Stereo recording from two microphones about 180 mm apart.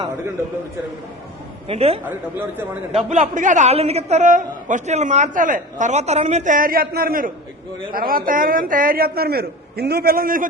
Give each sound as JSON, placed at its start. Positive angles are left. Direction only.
{"t": 1.6, "sound": "a man's voice", "side_deg": -35}
{"t": 2.0, "sound": "speech", "side_deg": -10}
{"t": 2.9, "sound": "a man's voice", "side_deg": -40}